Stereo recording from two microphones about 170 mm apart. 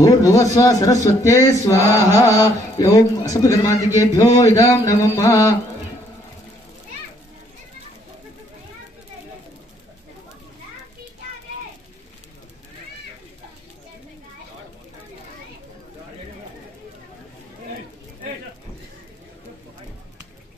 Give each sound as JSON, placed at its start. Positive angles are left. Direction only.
{"t": 0.0, "sound": "a man's voice", "side_deg": 20}